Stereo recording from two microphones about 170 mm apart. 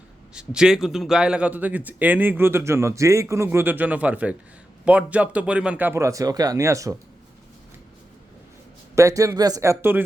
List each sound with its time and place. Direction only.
0.3 s a man's voice: 5° right (ahead or behind)
9.0 s speech: 20° right (ahead or behind)